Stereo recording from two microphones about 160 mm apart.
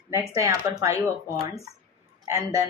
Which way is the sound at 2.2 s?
20° right (ahead or behind).